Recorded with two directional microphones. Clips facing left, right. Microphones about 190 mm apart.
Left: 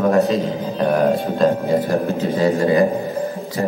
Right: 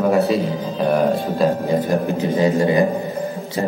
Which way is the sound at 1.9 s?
15° right (ahead or behind).